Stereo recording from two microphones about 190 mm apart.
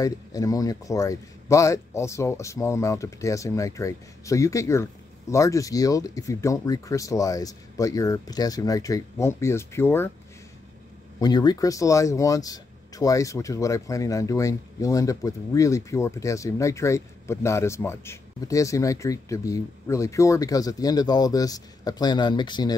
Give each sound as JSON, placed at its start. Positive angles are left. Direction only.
{"t": 0.0, "sound": "speech", "side_deg": 20}
{"t": 11.1, "sound": "speech", "side_deg": 20}